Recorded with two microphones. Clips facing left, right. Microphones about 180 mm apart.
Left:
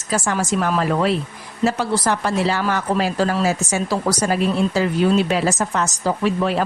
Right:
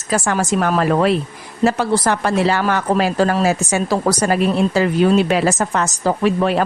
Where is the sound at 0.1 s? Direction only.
60° right (ahead or behind).